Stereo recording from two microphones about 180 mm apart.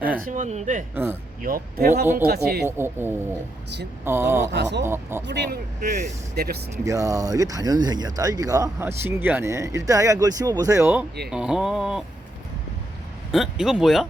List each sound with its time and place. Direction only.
0.3 s speech: 40° right (ahead or behind); by 2.6 s 60° right (ahead or behind)
2.6 s speech: 15° right (ahead or behind)
4.5 s speech: 70° right (ahead or behind)
4.8 s speech: 15° right (ahead or behind)
5.2 s speech: 70° right (ahead or behind)
5.8 s speech: 50° right (ahead or behind)
6.8 s speech: 20° right (ahead or behind)
11.3 s speech: 5° right (ahead or behind)
13.3 s speech: centre (ahead or behind)